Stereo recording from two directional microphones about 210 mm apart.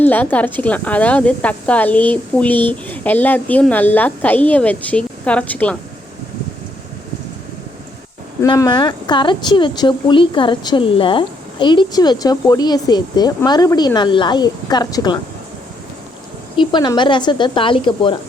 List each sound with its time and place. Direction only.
0.0 s speech: 10° left (ahead or behind)
8.4 s speech: 15° left (ahead or behind)
16.6 s speech: 20° left (ahead or behind)